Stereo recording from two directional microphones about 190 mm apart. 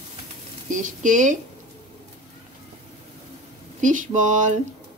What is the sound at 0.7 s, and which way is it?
Speech, 40° right (ahead or behind).